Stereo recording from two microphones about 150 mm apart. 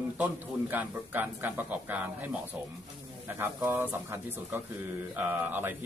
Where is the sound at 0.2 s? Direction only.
10° right (ahead or behind).